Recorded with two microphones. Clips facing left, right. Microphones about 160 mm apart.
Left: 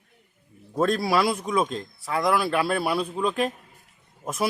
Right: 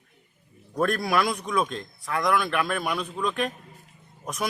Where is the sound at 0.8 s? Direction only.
25° left (ahead or behind).